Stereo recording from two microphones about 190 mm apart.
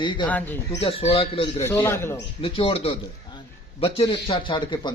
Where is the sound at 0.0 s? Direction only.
25° left (ahead or behind).